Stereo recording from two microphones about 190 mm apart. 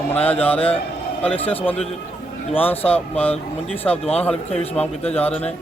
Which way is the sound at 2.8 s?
30° left (ahead or behind).